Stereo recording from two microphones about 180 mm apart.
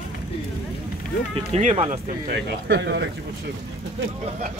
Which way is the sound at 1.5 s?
40° right (ahead or behind).